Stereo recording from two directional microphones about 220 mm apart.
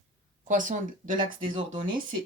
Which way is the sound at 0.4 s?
35° right (ahead or behind).